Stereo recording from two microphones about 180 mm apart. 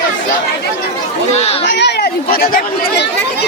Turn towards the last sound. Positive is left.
turn(degrees=55)  # may be behind; listen again after turning